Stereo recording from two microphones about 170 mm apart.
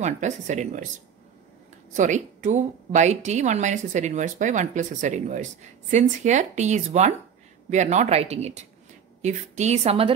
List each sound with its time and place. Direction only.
0.0 s a woman's voice: 45° right (ahead or behind)
2.0 s a woman's voice: 45° right (ahead or behind)